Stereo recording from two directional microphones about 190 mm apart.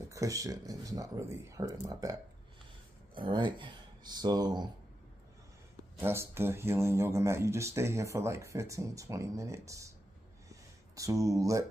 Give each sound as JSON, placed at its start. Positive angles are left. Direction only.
{"t": 0.1, "sound": "speech", "side_deg": -15}
{"t": 3.2, "sound": "speech", "side_deg": -25}
{"t": 5.9, "sound": "speech", "side_deg": -10}
{"t": 10.5, "sound": "a sound", "side_deg": -15}